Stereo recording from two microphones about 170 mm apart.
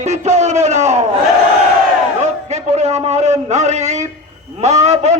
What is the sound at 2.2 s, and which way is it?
A man's voice, 40° right (ahead or behind).